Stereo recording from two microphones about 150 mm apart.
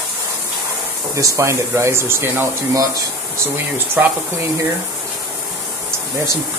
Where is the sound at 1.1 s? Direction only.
20° right (ahead or behind).